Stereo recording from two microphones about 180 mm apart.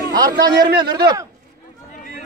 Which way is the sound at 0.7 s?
25° right (ahead or behind).